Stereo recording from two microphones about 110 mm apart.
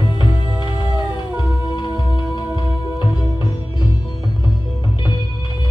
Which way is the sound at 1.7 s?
40° left (ahead or behind).